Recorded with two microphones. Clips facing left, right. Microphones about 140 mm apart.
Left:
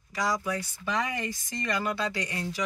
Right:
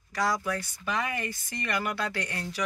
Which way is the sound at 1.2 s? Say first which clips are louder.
Left 1 dB; 25° left (ahead or behind).